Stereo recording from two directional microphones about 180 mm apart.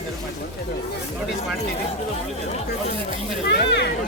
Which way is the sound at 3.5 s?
70° left (ahead or behind).